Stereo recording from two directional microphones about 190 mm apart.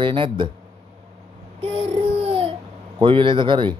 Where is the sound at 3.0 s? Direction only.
25° right (ahead or behind).